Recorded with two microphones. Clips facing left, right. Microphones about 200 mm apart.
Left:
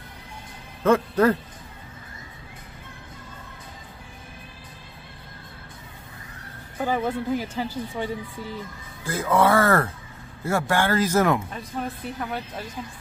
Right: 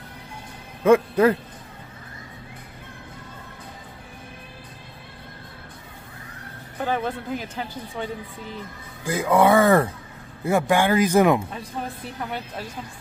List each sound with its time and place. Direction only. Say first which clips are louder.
0.8 s speech: right 3 dB; 10° right (ahead or behind)
6.8 s speech: left 1 dB; 10° left (ahead or behind)
9.0 s speech: right 2 dB; 15° right (ahead or behind)